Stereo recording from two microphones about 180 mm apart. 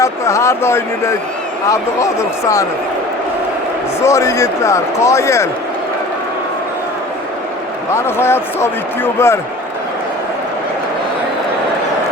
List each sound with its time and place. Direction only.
0.0 s speech: 15° left (ahead or behind)
4.0 s speech: 15° left (ahead or behind)
7.9 s speech: 15° left (ahead or behind)